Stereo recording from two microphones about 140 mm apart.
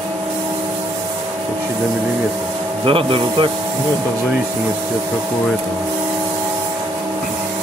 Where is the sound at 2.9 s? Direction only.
40° right (ahead or behind).